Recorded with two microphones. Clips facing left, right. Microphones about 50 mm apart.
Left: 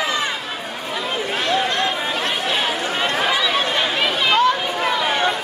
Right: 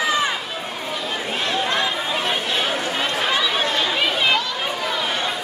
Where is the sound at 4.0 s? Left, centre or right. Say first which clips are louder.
Even; centre.